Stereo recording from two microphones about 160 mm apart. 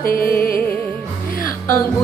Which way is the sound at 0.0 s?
65° left (ahead or behind).